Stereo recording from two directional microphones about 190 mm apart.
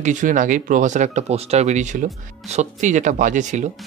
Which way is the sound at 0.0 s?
40° right (ahead or behind).